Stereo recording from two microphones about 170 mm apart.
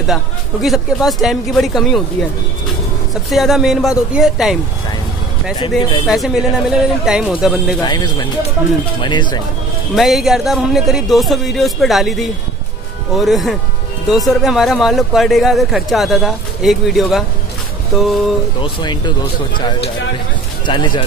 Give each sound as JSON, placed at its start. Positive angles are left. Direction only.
{"t": 0.0, "sound": "speech", "side_deg": 0}
{"t": 3.3, "sound": "speech", "side_deg": 0}
{"t": 5.8, "sound": "speech", "side_deg": 25}
{"t": 6.0, "sound": "speech", "side_deg": 0}
{"t": 7.8, "sound": "speech", "side_deg": 25}
{"t": 9.9, "sound": "speech", "side_deg": 0}
{"t": 18.6, "sound": "speech", "side_deg": 25}